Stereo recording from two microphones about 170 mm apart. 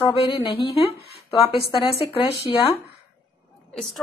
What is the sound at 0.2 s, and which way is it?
A woman's voice, 30° left (ahead or behind).